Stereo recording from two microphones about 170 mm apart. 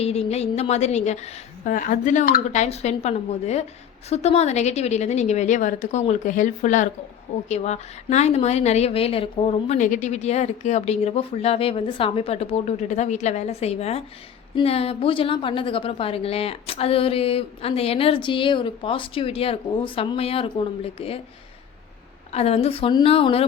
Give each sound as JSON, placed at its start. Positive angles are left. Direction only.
{"t": 0.0, "sound": "a woman's voice", "side_deg": 35}
{"t": 1.6, "sound": "a woman's voice", "side_deg": 50}
{"t": 22.3, "sound": "a woman's voice", "side_deg": 40}